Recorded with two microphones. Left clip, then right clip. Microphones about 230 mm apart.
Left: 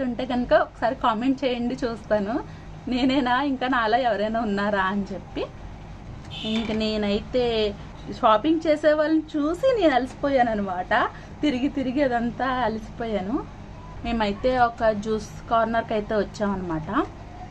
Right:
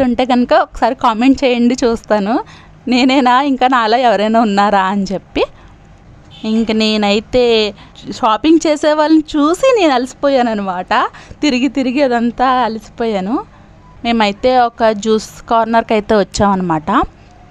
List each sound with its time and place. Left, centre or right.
0.0 s a woman's voice: right
6.7 s a woman's voice: right